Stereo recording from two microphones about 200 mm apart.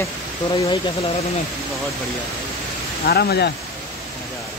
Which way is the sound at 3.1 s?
55° left (ahead or behind).